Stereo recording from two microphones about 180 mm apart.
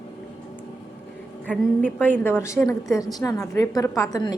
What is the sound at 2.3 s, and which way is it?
A woman's voice, 15° left (ahead or behind).